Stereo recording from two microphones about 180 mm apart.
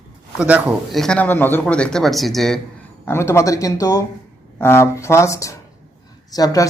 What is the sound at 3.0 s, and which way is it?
A woman's voice, 15° left (ahead or behind).